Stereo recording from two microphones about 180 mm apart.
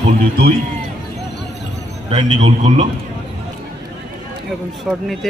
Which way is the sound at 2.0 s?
25° right (ahead or behind).